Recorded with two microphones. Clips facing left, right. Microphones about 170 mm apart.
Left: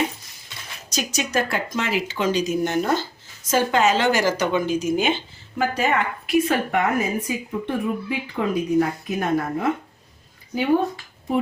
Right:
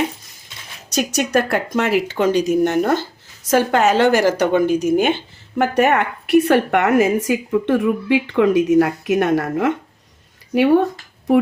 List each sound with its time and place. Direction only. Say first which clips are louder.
0.9 s a woman's voice: right 7 dB; 65° right (ahead or behind)